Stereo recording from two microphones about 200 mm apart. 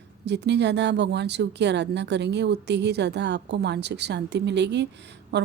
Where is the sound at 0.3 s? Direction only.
60° right (ahead or behind).